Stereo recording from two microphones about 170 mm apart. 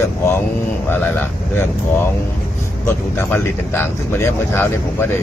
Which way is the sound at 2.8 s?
15° left (ahead or behind).